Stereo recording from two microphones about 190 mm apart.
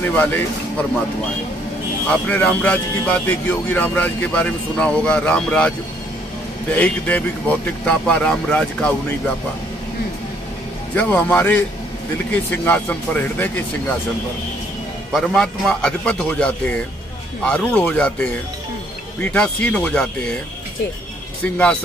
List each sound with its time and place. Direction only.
0.0 s speech: 10° left (ahead or behind)
2.0 s speech: 5° left (ahead or behind)
6.7 s speech: 10° left (ahead or behind)
11.0 s speech: 10° left (ahead or behind)
15.1 s a man's voice: 5° left (ahead or behind)